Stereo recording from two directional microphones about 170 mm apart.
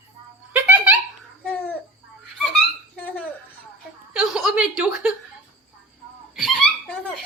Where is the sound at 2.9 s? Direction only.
10° left (ahead or behind).